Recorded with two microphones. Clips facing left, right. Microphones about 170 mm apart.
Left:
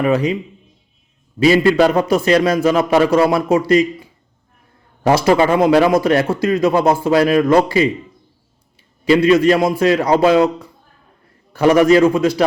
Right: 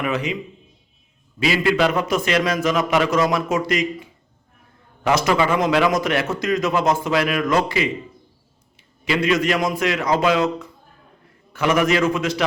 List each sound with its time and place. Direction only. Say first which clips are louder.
0.0 s speech: left 8 dB; 35° left (ahead or behind)
1.4 s speech: left 7 dB; 35° left (ahead or behind)
9.0 s speech: left 8 dB; 30° left (ahead or behind)